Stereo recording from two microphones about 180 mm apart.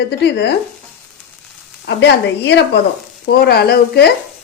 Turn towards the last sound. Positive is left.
turn(degrees=60)  # may be behind; listen again after turning